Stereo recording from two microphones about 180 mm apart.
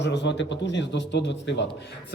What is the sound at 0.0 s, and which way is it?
A man's voice, 75° left (ahead or behind).